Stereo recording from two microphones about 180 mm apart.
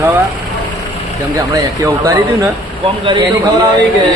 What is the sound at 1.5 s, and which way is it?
Speech, 15° right (ahead or behind).